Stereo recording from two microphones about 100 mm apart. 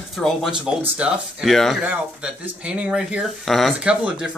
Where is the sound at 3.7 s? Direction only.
10° right (ahead or behind).